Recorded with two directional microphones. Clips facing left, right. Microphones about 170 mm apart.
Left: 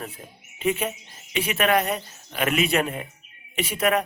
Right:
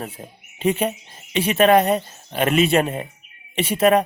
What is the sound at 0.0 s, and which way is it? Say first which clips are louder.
A woman's voice: right 4 dB; 30° right (ahead or behind).